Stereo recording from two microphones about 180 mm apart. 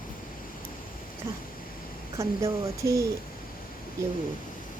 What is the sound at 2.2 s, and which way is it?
Speech, 15° right (ahead or behind).